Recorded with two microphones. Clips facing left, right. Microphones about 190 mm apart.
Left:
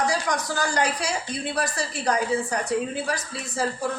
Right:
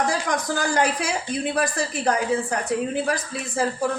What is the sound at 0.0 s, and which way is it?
A woman's voice, 55° right (ahead or behind).